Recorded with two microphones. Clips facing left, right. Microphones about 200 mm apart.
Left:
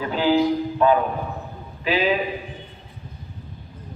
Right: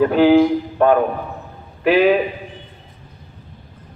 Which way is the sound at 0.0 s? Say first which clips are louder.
Right 8 dB; 60° right (ahead or behind).